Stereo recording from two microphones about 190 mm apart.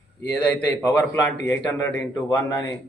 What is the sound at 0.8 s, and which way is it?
A man's voice, 15° left (ahead or behind).